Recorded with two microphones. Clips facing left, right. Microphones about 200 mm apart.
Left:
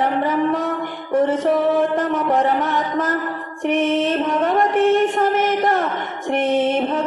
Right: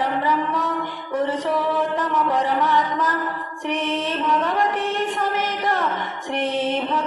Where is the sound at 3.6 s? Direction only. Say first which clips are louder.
Left 7 dB; 50° left (ahead or behind).